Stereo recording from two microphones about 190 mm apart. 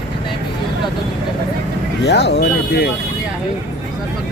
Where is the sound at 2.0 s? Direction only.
60° left (ahead or behind).